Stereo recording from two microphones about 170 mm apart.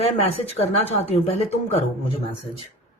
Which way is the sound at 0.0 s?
35° left (ahead or behind).